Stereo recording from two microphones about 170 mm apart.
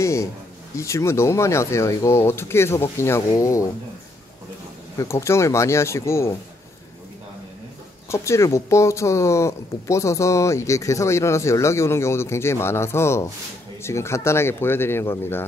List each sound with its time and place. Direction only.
0.0 s a sound: 15° left (ahead or behind)
0.7 s speech: 15° left (ahead or behind)
4.9 s speech: 15° left (ahead or behind)
8.1 s speech: 15° left (ahead or behind)